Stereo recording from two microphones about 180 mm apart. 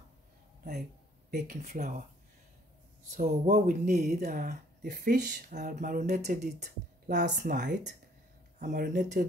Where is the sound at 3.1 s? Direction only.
45° right (ahead or behind).